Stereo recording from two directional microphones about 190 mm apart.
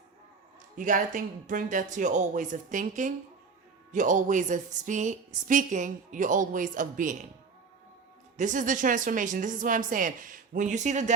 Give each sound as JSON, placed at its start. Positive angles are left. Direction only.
{"t": 0.8, "sound": "a woman's voice", "side_deg": -45}
{"t": 8.4, "sound": "a woman's voice", "side_deg": -40}